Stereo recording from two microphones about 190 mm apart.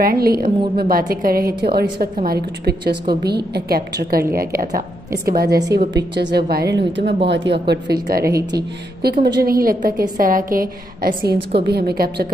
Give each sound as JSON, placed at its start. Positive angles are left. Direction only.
{"t": 0.0, "sound": "a woman's voice", "side_deg": -50}